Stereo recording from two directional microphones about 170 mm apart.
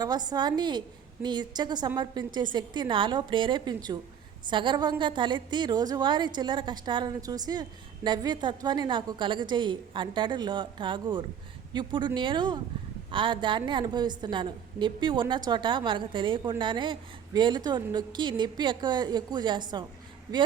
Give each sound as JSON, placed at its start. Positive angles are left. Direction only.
{"t": 0.0, "sound": "a woman's voice", "side_deg": -25}